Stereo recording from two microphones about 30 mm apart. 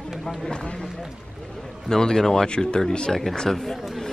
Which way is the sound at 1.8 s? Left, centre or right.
Left.